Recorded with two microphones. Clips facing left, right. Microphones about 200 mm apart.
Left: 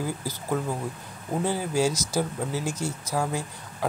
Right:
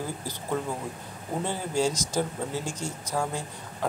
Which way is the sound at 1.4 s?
10° left (ahead or behind).